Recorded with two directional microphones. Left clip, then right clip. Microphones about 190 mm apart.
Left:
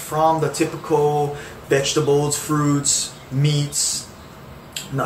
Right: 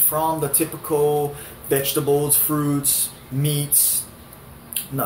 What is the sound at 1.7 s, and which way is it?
Speech, 15° right (ahead or behind).